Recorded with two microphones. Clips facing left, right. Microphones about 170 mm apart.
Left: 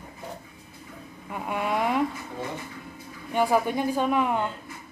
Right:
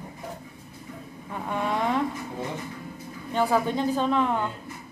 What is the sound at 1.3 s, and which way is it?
Speech, 10° left (ahead or behind).